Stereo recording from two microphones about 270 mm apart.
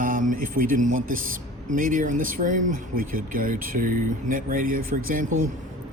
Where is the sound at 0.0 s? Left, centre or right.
Right.